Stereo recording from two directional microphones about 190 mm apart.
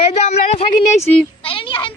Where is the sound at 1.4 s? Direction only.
25° left (ahead or behind).